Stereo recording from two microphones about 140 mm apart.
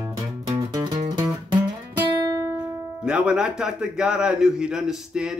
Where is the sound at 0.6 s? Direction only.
25° right (ahead or behind).